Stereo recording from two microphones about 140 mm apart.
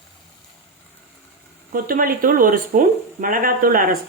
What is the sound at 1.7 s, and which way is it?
Speech, 85° right.